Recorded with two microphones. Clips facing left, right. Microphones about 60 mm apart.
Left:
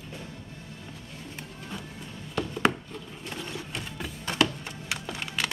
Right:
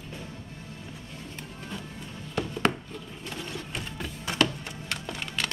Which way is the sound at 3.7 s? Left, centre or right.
Centre.